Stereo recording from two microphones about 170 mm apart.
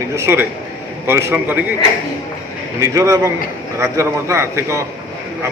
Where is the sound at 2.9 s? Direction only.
15° right (ahead or behind).